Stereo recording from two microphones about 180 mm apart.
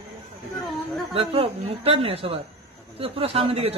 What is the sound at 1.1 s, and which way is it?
A man's voice, 30° right (ahead or behind).